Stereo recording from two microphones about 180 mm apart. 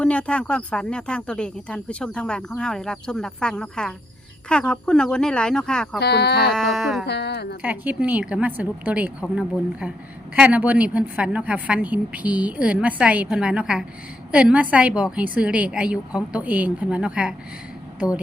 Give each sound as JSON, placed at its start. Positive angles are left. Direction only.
{"t": 0.0, "sound": "speech", "side_deg": 5}
{"t": 6.0, "sound": "speech", "side_deg": 65}
{"t": 6.5, "sound": "speech", "side_deg": 0}
{"t": 7.0, "sound": "speech", "side_deg": 65}
{"t": 7.6, "sound": "a woman's voice", "side_deg": -10}